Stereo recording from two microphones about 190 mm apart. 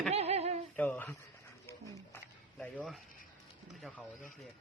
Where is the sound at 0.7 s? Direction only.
10° left (ahead or behind).